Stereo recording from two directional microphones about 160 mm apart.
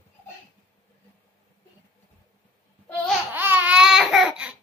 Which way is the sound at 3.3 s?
10° right (ahead or behind).